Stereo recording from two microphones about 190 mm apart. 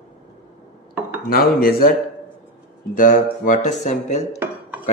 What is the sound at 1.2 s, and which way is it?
Speech, 50° left (ahead or behind).